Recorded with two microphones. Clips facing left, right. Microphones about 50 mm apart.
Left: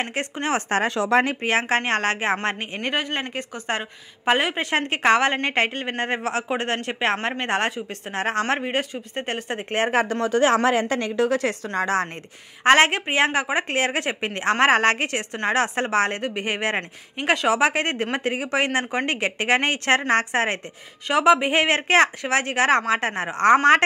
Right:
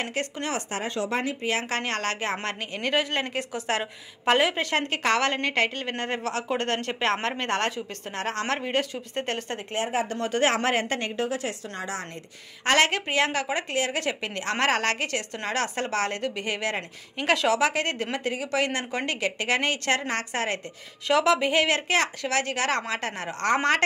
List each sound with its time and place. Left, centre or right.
0.0 s a woman's voice: left
0.7 s speech: left
1.4 s speech: left
2.9 s a woman's voice: centre
4.6 s a woman's voice: left
9.8 s speech: left
11.2 s a woman's voice: left
12.6 s a woman's voice: left
13.7 s a woman's voice: left
17.3 s a woman's voice: centre
17.6 s a woman's voice: left
21.1 s a woman's voice: centre